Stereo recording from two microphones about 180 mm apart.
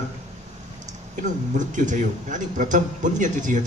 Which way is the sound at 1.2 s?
45° right (ahead or behind).